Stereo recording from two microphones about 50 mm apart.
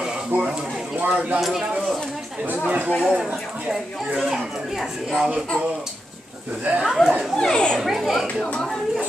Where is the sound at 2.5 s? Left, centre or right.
Right.